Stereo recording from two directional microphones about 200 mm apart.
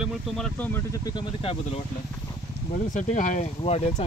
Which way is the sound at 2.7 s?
40° left (ahead or behind).